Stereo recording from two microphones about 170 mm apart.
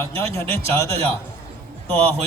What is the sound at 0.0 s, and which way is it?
Speech, 15° left (ahead or behind).